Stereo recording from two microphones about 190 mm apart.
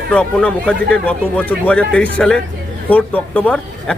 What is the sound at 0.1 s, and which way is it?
A man's voice, 5° left (ahead or behind).